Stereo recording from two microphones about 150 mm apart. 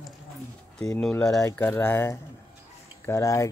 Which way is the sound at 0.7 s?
5° left (ahead or behind).